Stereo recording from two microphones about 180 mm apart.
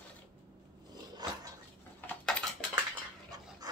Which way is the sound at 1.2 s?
25° right (ahead or behind).